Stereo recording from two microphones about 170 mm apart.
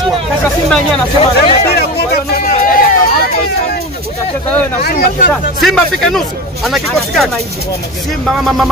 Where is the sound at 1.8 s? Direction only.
65° left (ahead or behind).